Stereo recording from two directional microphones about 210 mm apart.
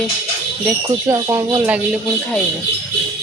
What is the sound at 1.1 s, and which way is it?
Speech, 15° right (ahead or behind).